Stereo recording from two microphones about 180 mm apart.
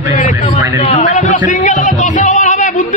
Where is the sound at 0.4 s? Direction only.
30° left (ahead or behind).